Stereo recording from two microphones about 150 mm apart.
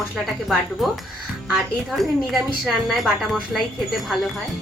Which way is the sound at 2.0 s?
Centre (ahead or behind).